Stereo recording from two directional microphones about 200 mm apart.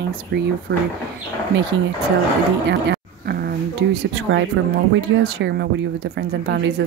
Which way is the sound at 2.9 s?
50° right (ahead or behind).